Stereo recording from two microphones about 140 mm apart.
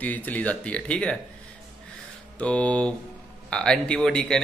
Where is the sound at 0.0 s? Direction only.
10° left (ahead or behind).